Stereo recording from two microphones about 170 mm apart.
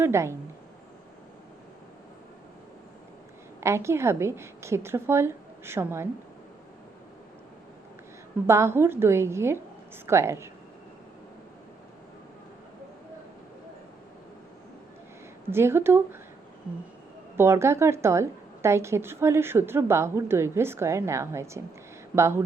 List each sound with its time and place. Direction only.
0.0 s a woman's voice: 15° right (ahead or behind)
3.6 s a woman's voice: 15° right (ahead or behind)
8.4 s a woman's voice: 15° right (ahead or behind)
15.5 s a woman's voice: 15° right (ahead or behind)
17.3 s a woman's voice: 15° right (ahead or behind)